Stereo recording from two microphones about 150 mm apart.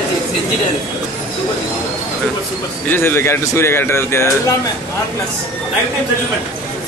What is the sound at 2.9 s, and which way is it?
A man's voice, 15° left (ahead or behind).